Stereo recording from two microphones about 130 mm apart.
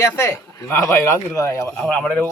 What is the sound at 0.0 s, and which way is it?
Speech, 20° left (ahead or behind).